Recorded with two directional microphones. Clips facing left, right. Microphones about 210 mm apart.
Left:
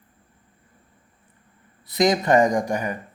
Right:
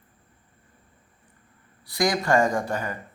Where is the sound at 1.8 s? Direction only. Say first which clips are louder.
Left 4 dB; 20° left (ahead or behind).